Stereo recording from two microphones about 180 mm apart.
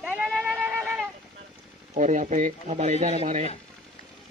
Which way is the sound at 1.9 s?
40° right (ahead or behind).